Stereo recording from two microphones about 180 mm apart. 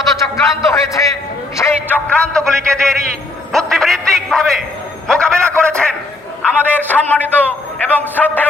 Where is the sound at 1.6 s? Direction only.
10° left (ahead or behind).